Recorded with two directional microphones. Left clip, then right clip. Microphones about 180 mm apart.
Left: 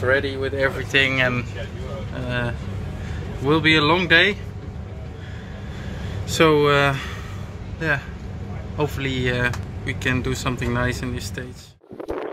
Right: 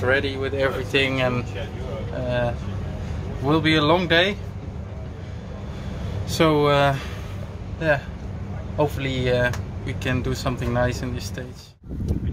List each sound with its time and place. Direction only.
0.0 s speech: 25° left (ahead or behind)
0.9 s speech: 5° right (ahead or behind)
6.2 s speech: centre (ahead or behind)
8.7 s speech: 10° right (ahead or behind)